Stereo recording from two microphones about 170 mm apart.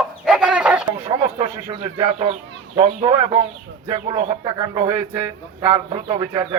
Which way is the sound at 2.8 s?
30° right (ahead or behind).